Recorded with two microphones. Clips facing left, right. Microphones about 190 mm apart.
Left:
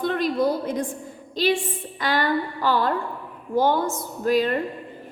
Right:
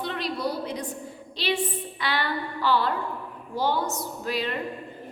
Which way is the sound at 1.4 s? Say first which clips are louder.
Left 5 dB; 45° left (ahead or behind).